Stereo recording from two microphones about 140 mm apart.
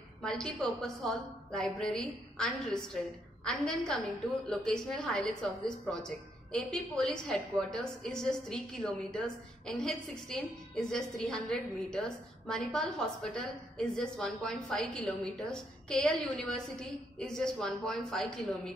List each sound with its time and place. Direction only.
0.2 s a woman's voice: 5° left (ahead or behind)